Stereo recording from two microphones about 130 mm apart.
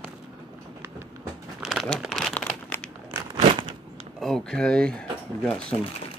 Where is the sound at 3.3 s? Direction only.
40° right (ahead or behind).